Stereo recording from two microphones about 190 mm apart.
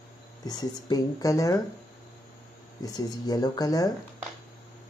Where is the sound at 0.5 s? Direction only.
20° left (ahead or behind).